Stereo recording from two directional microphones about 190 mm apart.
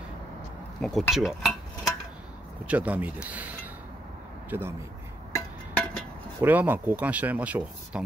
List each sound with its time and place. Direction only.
0.7 s speech: 5° left (ahead or behind)
4.5 s speech: 10° right (ahead or behind)
6.4 s speech: 10° right (ahead or behind)